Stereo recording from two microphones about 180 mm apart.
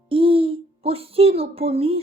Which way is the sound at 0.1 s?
30° right (ahead or behind).